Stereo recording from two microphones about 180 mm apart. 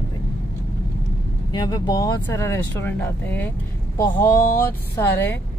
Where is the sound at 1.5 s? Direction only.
20° left (ahead or behind).